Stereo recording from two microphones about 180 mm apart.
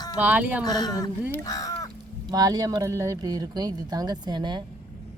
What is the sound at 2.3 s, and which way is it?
Speech, 20° right (ahead or behind).